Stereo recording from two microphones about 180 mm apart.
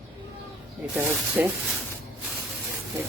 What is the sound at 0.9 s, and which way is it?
Speech, 10° right (ahead or behind).